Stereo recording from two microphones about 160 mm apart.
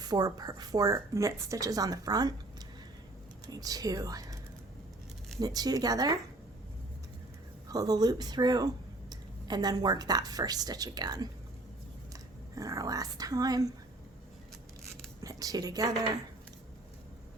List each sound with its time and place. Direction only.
0.0 s a woman's voice: 25° right (ahead or behind)
3.4 s speech: 25° right (ahead or behind)
5.4 s a woman's voice: 25° right (ahead or behind)
7.7 s speech: 25° right (ahead or behind)
12.5 s a woman's voice: 20° right (ahead or behind)
15.2 s a woman's voice: 20° right (ahead or behind)